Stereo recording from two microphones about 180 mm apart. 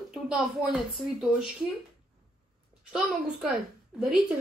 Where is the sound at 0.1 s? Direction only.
Centre (ahead or behind).